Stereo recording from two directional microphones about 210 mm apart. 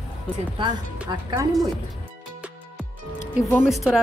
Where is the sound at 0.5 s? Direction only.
20° right (ahead or behind).